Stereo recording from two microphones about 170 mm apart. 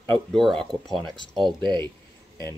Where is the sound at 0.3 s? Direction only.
5° left (ahead or behind).